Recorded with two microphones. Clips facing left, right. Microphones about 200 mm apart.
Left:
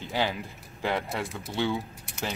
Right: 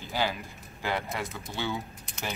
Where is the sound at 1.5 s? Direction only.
25° left (ahead or behind).